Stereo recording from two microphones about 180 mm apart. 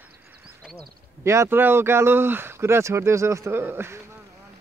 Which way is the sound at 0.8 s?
15° right (ahead or behind).